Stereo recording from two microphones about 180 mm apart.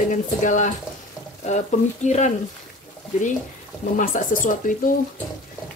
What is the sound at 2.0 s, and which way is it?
Speech, 40° left (ahead or behind).